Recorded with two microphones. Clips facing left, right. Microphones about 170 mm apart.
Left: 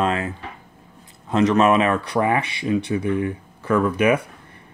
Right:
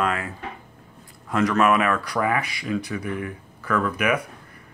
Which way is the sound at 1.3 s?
25° left (ahead or behind).